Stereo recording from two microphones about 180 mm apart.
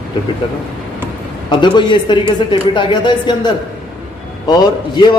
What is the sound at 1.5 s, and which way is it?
Speech, 25° left (ahead or behind).